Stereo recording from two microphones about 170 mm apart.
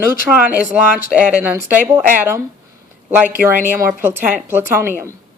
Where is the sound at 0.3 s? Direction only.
5° right (ahead or behind).